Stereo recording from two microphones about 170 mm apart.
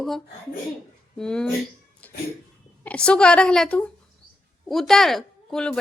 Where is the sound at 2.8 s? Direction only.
5° left (ahead or behind).